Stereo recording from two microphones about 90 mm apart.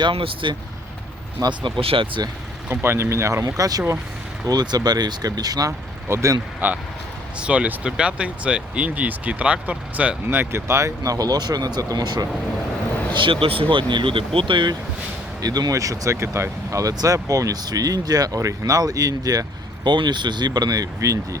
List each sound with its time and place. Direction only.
0.0 s speech: 80° right
1.4 s speech: 60° right (ahead or behind); by 2.2 s 80° right
2.6 s speech: 25° right (ahead or behind)
3.4 s speech: 45° right (ahead or behind)
6.1 s speech: 35° right (ahead or behind)
6.6 s speech: 20° right (ahead or behind); by 12.3 s 50° right (ahead or behind)
13.1 s speech: 80° right
15.4 s speech: 45° right (ahead or behind)